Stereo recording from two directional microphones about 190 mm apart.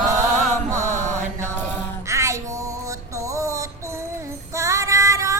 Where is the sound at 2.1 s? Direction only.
15° right (ahead or behind).